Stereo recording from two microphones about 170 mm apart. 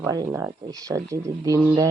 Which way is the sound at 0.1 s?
20° right (ahead or behind).